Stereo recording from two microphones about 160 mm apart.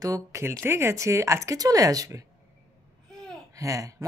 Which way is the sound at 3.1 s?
20° right (ahead or behind).